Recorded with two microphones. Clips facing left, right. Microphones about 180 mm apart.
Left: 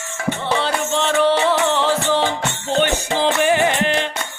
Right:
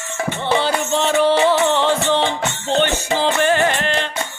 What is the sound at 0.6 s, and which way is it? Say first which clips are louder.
Music: right 1 dB; centre (ahead or behind).